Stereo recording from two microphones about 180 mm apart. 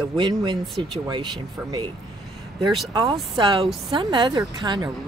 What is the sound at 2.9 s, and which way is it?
Speech, 20° right (ahead or behind).